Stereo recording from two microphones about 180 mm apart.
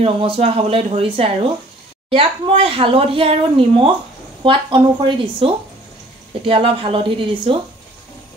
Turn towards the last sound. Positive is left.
turn(degrees=-30)  # may be behind; listen again after turning